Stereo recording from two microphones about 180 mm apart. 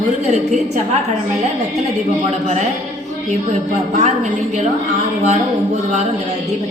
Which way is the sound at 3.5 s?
40° right (ahead or behind).